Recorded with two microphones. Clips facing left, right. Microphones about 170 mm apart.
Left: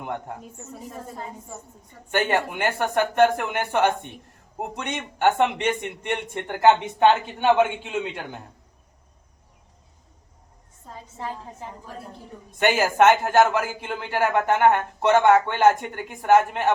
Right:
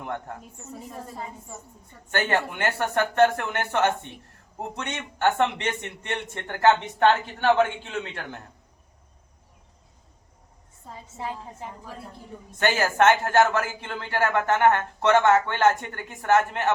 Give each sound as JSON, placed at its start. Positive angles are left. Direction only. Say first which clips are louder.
{"t": 0.0, "sound": "speech", "louder": "left 2 dB", "side_deg": 15}
{"t": 0.9, "sound": "a woman's voice", "louder": "left 2 dB", "side_deg": 5}
{"t": 2.1, "sound": "speech", "louder": "left 2 dB", "side_deg": 15}
{"t": 12.5, "sound": "speech", "louder": "left 3 dB", "side_deg": 15}